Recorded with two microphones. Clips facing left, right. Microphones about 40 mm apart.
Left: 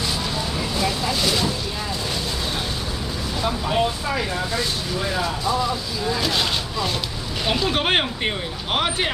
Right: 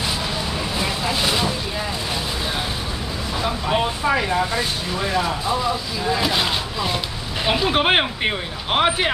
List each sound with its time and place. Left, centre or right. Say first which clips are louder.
0.7 s vehicle: even; centre
3.4 s speech: even; centre